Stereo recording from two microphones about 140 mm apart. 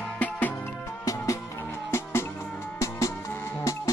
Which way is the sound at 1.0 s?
20° left (ahead or behind).